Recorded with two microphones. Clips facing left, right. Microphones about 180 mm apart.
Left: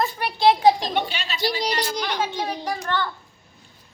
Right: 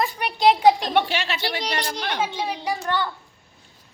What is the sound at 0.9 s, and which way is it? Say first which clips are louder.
Speech: right 4 dB; 75° right (ahead or behind).